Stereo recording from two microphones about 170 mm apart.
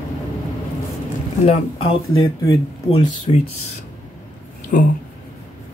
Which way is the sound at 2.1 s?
20° left (ahead or behind).